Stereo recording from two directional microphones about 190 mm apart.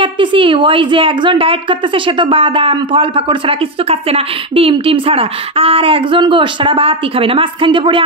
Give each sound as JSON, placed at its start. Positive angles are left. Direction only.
{"t": 0.0, "sound": "a woman's voice", "side_deg": -25}